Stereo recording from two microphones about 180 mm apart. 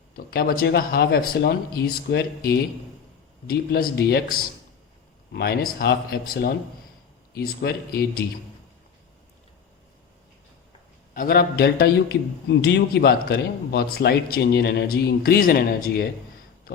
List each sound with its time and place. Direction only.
0.3 s speech: 55° left (ahead or behind)
11.1 s speech: 55° left (ahead or behind)